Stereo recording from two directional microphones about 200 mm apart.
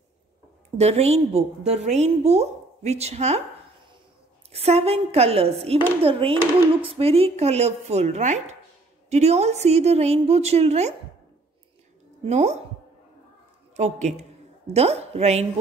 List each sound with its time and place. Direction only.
0.7 s a woman's voice: 30° right (ahead or behind)
4.5 s a woman's voice: 30° right (ahead or behind)
12.3 s a woman's voice: 35° right (ahead or behind)
13.7 s a woman's voice: 35° right (ahead or behind)